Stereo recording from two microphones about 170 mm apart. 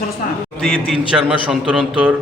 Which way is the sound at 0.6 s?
Centre (ahead or behind).